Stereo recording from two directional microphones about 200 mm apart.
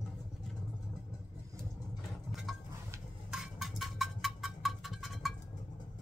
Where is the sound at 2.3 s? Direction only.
Centre (ahead or behind).